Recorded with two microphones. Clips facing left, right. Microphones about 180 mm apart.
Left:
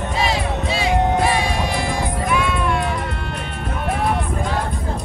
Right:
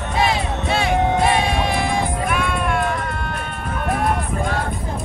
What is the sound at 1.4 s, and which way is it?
Music, 55° right (ahead or behind).